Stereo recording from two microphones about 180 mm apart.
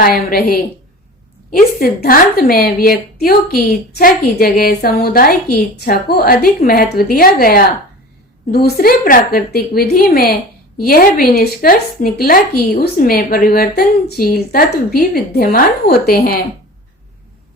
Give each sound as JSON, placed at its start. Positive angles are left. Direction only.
{"t": 0.0, "sound": "a woman's voice", "side_deg": 55}